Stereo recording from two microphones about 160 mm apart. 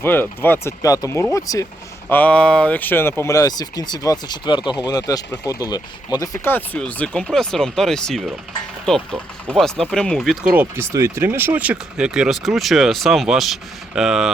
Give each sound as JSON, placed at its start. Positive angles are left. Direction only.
{"t": 0.0, "sound": "speech", "side_deg": 15}
{"t": 2.0, "sound": "speech", "side_deg": 10}